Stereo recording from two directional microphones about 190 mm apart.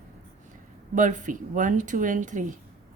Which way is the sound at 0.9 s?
40° right (ahead or behind).